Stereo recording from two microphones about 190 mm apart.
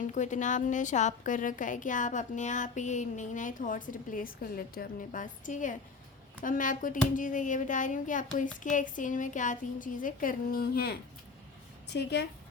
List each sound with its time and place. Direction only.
0.1 s a woman's voice: 40° left (ahead or behind); by 12.2 s 60° left (ahead or behind)